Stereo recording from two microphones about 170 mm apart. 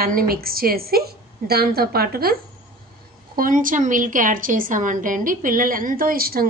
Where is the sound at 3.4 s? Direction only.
50° right (ahead or behind).